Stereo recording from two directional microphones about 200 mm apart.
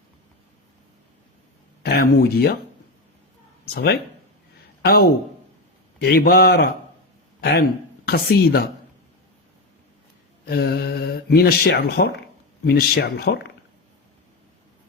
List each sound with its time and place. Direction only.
1.8 s speech: 50° left (ahead or behind)
4.8 s a man's voice: 50° left (ahead or behind)
10.4 s speech: 50° left (ahead or behind)